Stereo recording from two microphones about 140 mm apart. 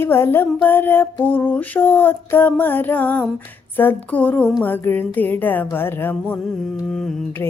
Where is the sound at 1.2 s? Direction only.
10° left (ahead or behind).